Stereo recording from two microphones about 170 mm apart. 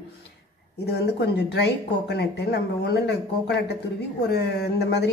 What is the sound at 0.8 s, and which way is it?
A man's voice, 75° left (ahead or behind).